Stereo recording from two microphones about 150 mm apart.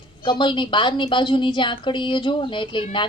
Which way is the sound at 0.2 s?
30° left (ahead or behind).